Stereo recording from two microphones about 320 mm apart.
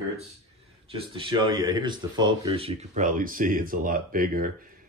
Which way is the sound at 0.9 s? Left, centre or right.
Centre.